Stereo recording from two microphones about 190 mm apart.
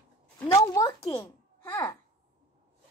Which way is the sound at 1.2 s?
10° left (ahead or behind).